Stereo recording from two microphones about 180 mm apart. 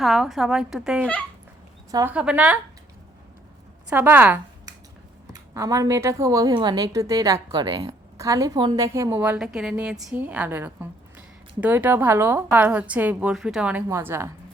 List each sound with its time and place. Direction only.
0.0 s a woman's voice: centre (ahead or behind)
1.9 s speech: 20° right (ahead or behind)
2.1 s a woman's voice: 5° right (ahead or behind)
3.8 s a woman's voice: 10° right (ahead or behind)
9.4 s a woman's voice: 5° right (ahead or behind)